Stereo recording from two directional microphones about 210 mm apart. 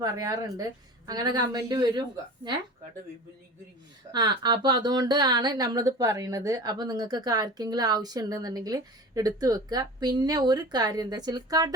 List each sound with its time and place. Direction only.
0.0 s a woman's voice: 15° right (ahead or behind)
4.1 s speech: 20° right (ahead or behind)